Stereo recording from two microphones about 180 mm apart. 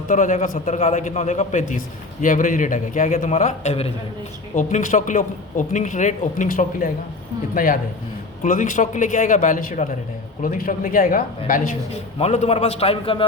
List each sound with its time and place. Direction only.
0.1 s a man's voice: 45° left (ahead or behind)
12.2 s a man's voice: 35° left (ahead or behind)